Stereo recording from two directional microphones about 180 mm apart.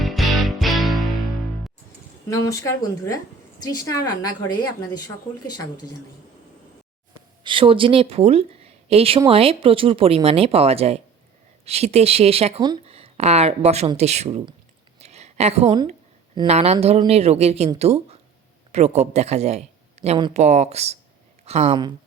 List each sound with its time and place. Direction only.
0.0 s music: centre (ahead or behind)
2.3 s speech: 20° left (ahead or behind)
7.4 s speech: 30° right (ahead or behind)
12.5 s speech: 20° right (ahead or behind)
12.8 s speech: 35° right (ahead or behind)
14.9 s a sound: 35° right (ahead or behind)
16.5 s speech: 35° right (ahead or behind)